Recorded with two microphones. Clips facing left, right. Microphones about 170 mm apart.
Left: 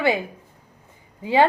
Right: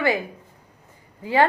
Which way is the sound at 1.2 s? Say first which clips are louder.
Left 2 dB; 20° left (ahead or behind).